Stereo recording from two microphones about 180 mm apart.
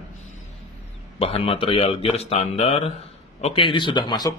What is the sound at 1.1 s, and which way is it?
A man's voice, 30° left (ahead or behind).